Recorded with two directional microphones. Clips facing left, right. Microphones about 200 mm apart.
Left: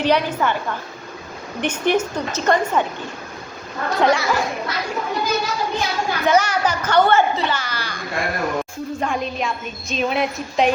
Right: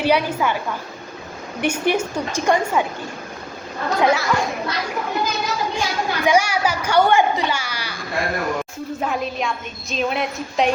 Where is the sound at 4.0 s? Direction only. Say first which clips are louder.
Left 1 dB; 5° right (ahead or behind).